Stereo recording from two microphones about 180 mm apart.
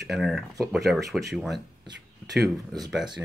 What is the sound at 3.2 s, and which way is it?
Speech, 10° right (ahead or behind).